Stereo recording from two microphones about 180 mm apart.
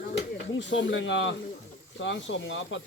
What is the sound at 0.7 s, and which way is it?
Speech, 90° left.